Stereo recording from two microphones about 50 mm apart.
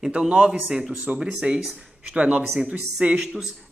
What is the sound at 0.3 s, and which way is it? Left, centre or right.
A man's voice, centre.